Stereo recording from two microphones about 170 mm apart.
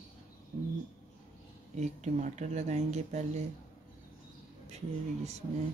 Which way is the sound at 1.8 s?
45° right (ahead or behind).